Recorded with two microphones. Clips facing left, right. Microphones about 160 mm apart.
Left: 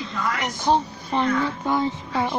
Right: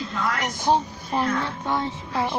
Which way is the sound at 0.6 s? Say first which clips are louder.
Left 1 dB; 10° right (ahead or behind).